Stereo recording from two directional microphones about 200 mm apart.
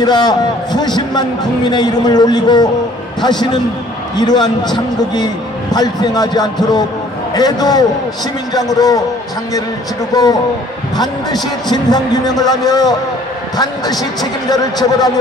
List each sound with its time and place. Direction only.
0.0 s a man's voice: 20° left (ahead or behind)
10.1 s a man's voice: 20° left (ahead or behind)
11.7 s a man's voice: 20° left (ahead or behind)